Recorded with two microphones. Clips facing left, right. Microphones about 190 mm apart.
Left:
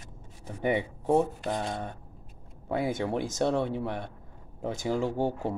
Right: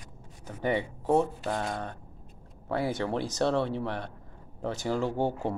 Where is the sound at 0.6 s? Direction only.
15° left (ahead or behind).